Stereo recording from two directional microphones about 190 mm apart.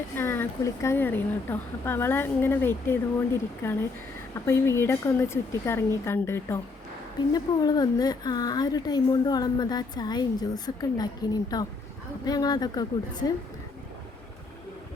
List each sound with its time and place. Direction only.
0.2 s speech: 15° left (ahead or behind)